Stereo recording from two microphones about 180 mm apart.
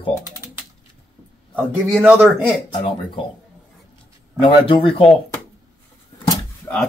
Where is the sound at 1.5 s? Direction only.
10° right (ahead or behind).